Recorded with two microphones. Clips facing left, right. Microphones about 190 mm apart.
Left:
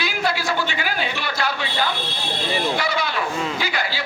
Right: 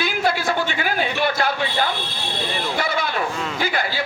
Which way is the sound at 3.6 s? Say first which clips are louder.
Right 3 dB; 50° right (ahead or behind).